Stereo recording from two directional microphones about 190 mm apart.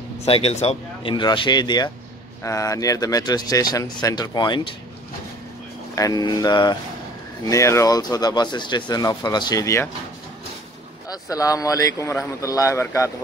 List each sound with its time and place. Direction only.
0.2 s speech: 30° left (ahead or behind)
5.9 s speech: 20° left (ahead or behind)
11.1 s speech: 20° left (ahead or behind)